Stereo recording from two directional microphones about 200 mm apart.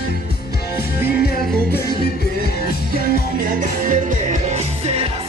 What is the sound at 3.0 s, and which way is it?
Music, 45° right (ahead or behind).